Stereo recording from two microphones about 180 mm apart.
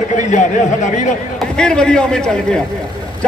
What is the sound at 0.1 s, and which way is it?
A man's voice, 45° left (ahead or behind).